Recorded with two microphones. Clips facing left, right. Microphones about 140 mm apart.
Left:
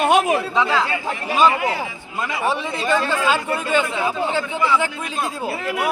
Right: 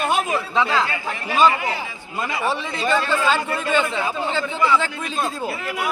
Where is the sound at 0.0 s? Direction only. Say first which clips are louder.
Left 5 dB; 75° left (ahead or behind).